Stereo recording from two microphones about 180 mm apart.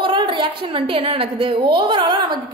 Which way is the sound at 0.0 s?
30° right (ahead or behind).